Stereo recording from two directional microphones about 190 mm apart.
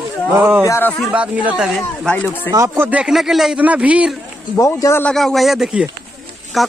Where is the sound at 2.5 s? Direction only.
15° right (ahead or behind).